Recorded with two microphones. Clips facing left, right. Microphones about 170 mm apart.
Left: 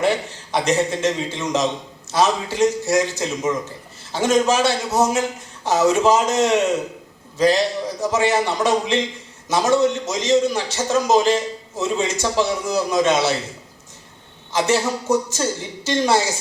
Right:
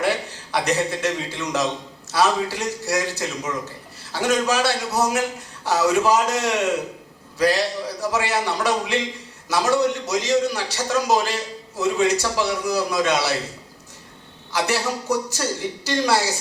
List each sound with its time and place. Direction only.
0.5 s a man's voice: 20° left (ahead or behind)
14.5 s a man's voice: 20° left (ahead or behind)